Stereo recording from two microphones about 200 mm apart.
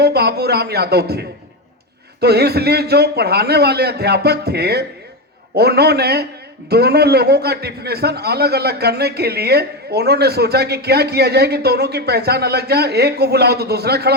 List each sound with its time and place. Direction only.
0.0 s a man's voice: 55° right (ahead or behind)